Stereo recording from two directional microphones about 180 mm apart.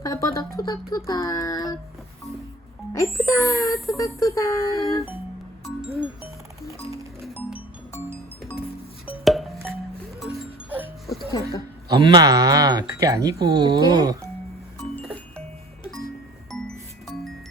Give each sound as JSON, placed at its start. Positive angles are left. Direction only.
{"t": 0.0, "sound": "speech", "side_deg": 20}
{"t": 2.9, "sound": "music", "side_deg": 15}
{"t": 3.2, "sound": "speech", "side_deg": 15}
{"t": 6.6, "sound": "music", "side_deg": 0}
{"t": 8.1, "sound": "music", "side_deg": -10}
{"t": 9.0, "sound": "a sound", "side_deg": 0}
{"t": 10.2, "sound": "music", "side_deg": -5}
{"t": 11.3, "sound": "a sound", "side_deg": 20}
{"t": 11.9, "sound": "speech", "side_deg": -25}
{"t": 16.5, "sound": "music", "side_deg": 0}